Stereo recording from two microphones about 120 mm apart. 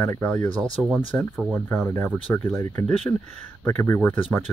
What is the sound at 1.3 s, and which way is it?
Speech, 5° right (ahead or behind).